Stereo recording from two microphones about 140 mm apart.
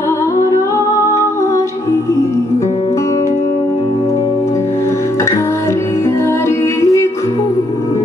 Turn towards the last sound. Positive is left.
turn(degrees=20)  # may be behind; listen again after turning